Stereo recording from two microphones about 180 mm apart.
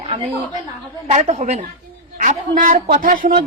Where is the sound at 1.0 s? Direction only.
40° right (ahead or behind).